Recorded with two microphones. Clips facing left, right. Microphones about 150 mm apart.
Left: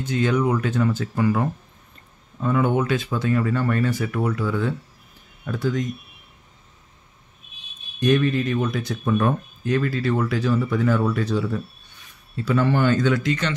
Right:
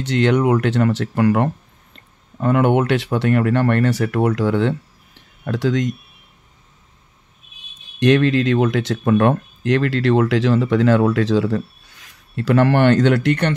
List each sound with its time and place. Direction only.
0.0 s speech: 75° right (ahead or behind)
8.0 s speech: 90° right; by 13.5 s 65° right (ahead or behind)